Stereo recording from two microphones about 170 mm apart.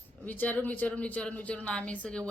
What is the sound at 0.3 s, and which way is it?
Speech, 10° left (ahead or behind).